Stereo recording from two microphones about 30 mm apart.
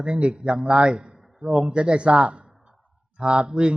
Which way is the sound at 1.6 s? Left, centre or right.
Right.